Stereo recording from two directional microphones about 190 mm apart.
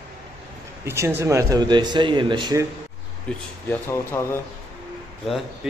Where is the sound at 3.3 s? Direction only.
10° left (ahead or behind).